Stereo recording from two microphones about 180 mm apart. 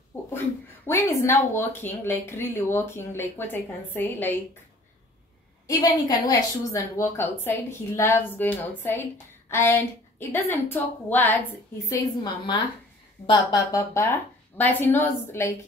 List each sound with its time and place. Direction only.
0.8 s a woman's voice: 15° left (ahead or behind)
5.7 s a woman's voice: 20° left (ahead or behind)
11.9 s a woman's voice: 25° left (ahead or behind)